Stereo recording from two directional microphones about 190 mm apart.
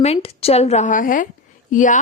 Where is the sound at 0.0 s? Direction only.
30° left (ahead or behind).